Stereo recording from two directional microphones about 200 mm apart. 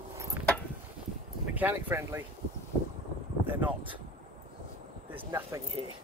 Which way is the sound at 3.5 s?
10° right (ahead or behind).